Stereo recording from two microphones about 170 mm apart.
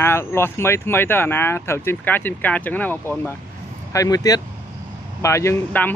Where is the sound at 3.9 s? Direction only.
20° left (ahead or behind).